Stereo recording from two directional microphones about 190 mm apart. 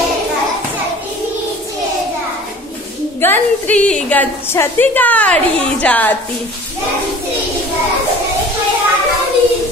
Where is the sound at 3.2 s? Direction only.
10° left (ahead or behind).